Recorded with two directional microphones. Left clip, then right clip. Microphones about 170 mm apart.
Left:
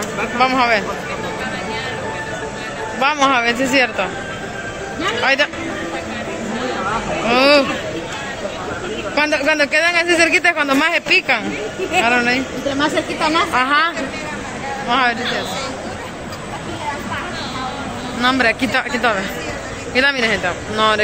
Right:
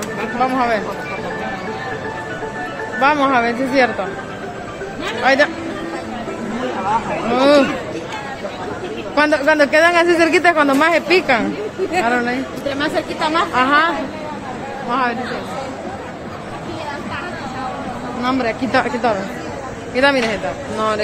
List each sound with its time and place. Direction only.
0.4 s speech: 10° right (ahead or behind)
3.0 s speech: 10° right (ahead or behind)
5.2 s speech: 15° right (ahead or behind)
7.2 s speech: 15° right (ahead or behind)
9.1 s a man's voice: 25° right (ahead or behind)
12.9 s speech: 15° left (ahead or behind)
13.5 s a man's voice: centre (ahead or behind)
18.2 s a man's voice: centre (ahead or behind)